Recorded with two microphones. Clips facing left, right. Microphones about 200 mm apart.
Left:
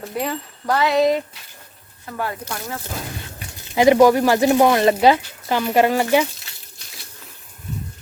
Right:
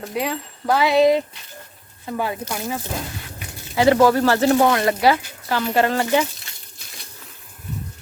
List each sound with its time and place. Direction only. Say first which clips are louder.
0.0 s speech: even; centre (ahead or behind)
3.8 s speech: left 2 dB; 15° left (ahead or behind)